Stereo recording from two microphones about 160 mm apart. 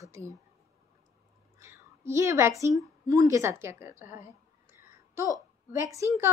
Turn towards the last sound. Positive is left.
turn(degrees=-20)  # may be behind; listen again after turning